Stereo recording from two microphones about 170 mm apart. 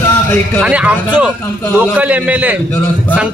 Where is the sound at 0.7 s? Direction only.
5° right (ahead or behind).